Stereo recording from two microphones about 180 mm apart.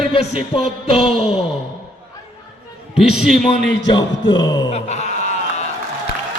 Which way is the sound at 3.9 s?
25° left (ahead or behind).